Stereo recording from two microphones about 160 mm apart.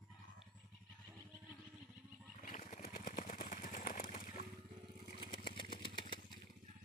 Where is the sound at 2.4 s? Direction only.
50° left (ahead or behind).